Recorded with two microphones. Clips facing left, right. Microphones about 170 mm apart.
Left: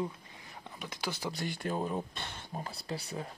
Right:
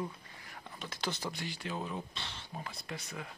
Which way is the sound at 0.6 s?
15° left (ahead or behind).